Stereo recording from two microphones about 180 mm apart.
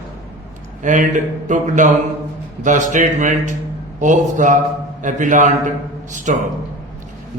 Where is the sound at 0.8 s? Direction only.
45° right (ahead or behind).